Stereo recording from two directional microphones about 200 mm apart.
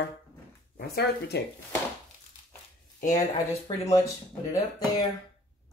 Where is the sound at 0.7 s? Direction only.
50° left (ahead or behind).